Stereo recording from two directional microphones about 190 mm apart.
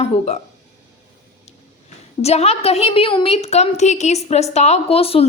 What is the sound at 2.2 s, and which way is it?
Speech, 35° left (ahead or behind).